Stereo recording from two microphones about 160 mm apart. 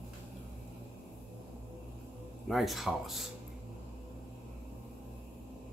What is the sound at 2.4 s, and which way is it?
Speech, centre (ahead or behind).